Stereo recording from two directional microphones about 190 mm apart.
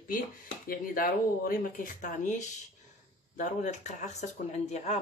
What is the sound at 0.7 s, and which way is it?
Speech, 50° left (ahead or behind).